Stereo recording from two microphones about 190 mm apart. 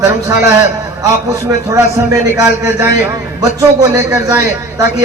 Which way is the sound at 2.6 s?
15° right (ahead or behind).